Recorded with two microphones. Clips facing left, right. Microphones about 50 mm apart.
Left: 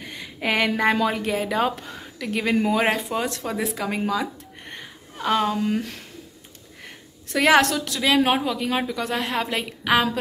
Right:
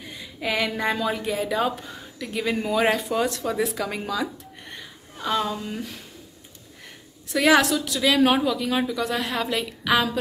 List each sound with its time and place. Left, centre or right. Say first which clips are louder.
0.0 s speech: left 2 dB; left
2.1 s speech: left 2 dB; left
2.6 s speech: left 1 dB; left
7.2 s a woman's voice: left 1 dB; left
8.0 s a woman's voice: even; left